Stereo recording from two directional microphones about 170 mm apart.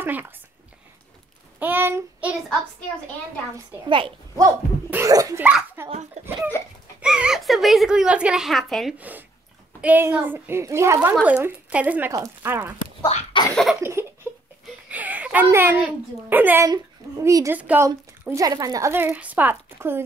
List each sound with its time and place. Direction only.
0.0 s speech: 10° right (ahead or behind)
1.6 s a child's voice: 10° right (ahead or behind)
3.9 s a child's voice: 30° right (ahead or behind); by 5.9 s 10° right (ahead or behind)
6.2 s speech: 40° right (ahead or behind)
7.0 s a woman's voice: 5° right (ahead or behind)
8.9 s speech: 10° right (ahead or behind)
13.0 s cough: 30° left (ahead or behind)
13.7 s a sound: 15° right (ahead or behind)
15.4 s a child's voice: 15° right (ahead or behind)
18.3 s speech: 20° right (ahead or behind)